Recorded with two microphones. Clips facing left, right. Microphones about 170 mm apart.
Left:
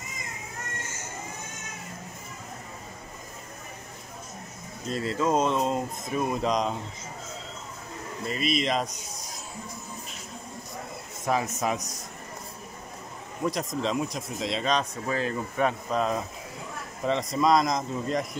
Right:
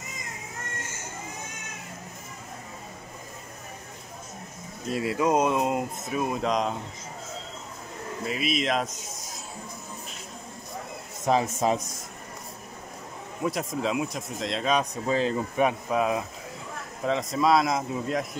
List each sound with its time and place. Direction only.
4.9 s speech: 10° right (ahead or behind)
8.3 s speech: 5° right (ahead or behind)
11.2 s speech: 25° right (ahead or behind)
13.4 s speech: 5° right (ahead or behind)
15.0 s speech: 20° right (ahead or behind); by 18.2 s 5° right (ahead or behind)